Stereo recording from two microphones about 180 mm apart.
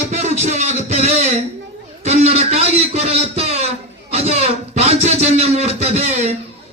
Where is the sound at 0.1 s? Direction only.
40° right (ahead or behind).